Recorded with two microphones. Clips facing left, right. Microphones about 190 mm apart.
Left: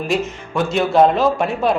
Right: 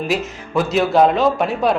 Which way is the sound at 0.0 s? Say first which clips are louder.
Left 1 dB; centre (ahead or behind).